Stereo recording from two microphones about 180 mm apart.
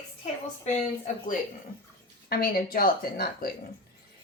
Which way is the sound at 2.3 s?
55° left (ahead or behind).